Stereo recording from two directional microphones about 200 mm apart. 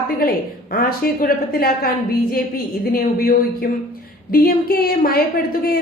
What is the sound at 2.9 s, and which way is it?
A woman's voice, 45° left (ahead or behind).